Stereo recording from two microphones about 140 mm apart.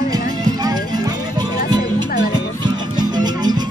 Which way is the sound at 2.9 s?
30° right (ahead or behind).